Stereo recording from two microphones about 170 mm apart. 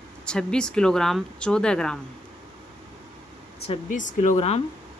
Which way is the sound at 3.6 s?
40° left (ahead or behind).